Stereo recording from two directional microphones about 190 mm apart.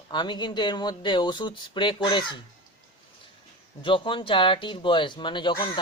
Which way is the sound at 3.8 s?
25° left (ahead or behind).